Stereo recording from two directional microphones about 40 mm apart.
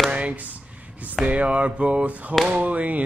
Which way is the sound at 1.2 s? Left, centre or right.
Right.